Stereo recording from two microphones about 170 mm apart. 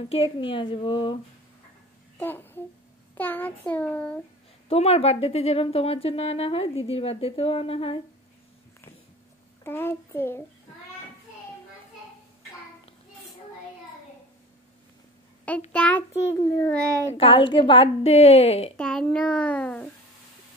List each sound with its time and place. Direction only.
0.0 s a woman's voice: 35° left (ahead or behind)
2.1 s babbling: 10° left (ahead or behind)
3.2 s a child's voice: 10° left (ahead or behind)
4.6 s a woman's voice: 35° left (ahead or behind)
9.6 s a child's voice: 15° left (ahead or behind)
15.7 s a child's voice: 5° left (ahead or behind)
16.1 s a woman's voice: 40° left (ahead or behind)
18.8 s a child's voice: 5° left (ahead or behind)